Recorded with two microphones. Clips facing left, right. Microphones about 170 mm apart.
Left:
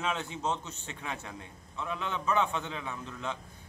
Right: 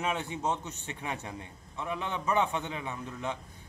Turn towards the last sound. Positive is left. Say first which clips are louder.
# right 2 dB
turn(degrees=-15)  # may be behind; listen again after turning